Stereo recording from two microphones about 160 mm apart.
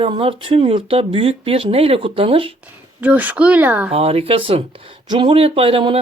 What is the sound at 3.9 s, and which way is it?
Speech, 35° right (ahead or behind).